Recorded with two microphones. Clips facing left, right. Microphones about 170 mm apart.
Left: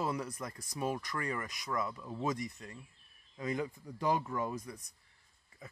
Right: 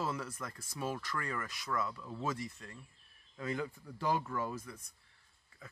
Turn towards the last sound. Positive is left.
turn(degrees=15)  # may be behind; listen again after turning